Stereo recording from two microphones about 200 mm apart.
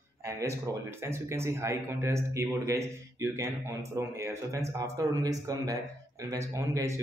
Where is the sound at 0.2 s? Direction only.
15° right (ahead or behind).